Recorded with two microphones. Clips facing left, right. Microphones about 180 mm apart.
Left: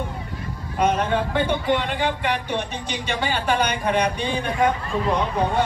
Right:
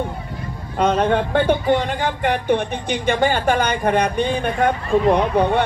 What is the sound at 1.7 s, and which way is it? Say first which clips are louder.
Speech: right 3 dB; 45° right (ahead or behind).